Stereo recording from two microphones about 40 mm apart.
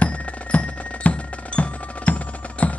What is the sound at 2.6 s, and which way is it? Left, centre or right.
Music, left.